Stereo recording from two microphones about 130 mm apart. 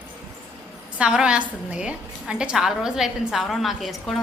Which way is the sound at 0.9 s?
10° right (ahead or behind).